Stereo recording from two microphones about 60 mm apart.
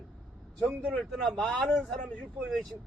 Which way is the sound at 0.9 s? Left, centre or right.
Centre.